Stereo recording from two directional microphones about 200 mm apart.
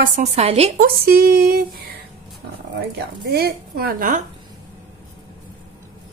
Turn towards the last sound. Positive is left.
turn(degrees=-45)  # may be behind; listen again after turning